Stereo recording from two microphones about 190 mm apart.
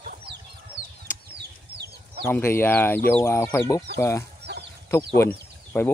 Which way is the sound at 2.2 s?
10° left (ahead or behind).